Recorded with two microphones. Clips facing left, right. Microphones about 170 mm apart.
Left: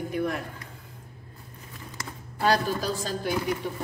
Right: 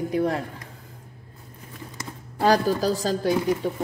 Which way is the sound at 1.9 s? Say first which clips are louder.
Right 1 dB; 35° right (ahead or behind).